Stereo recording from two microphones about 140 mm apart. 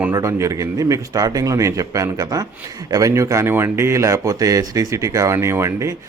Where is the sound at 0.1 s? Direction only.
20° right (ahead or behind).